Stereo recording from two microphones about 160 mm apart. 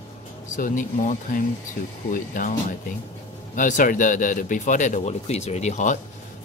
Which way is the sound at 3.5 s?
55° left (ahead or behind).